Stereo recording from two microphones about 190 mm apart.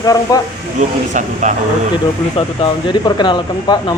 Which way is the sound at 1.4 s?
40° right (ahead or behind).